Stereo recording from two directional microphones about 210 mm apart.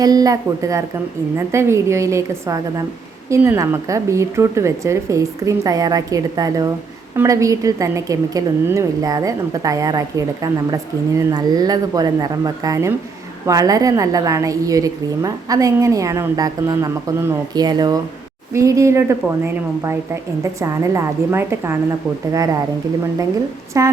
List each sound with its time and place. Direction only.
0.0 s a woman's voice: 20° right (ahead or behind)
20.4 s a woman's voice: 15° right (ahead or behind)
23.7 s a woman's voice: 15° right (ahead or behind)